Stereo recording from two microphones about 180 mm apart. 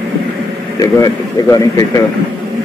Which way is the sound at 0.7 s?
20° left (ahead or behind).